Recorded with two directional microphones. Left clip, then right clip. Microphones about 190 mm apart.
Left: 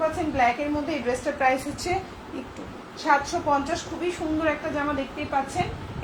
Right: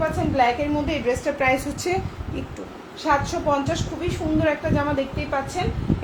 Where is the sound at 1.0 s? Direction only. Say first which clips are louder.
Right 1 dB; 40° right (ahead or behind).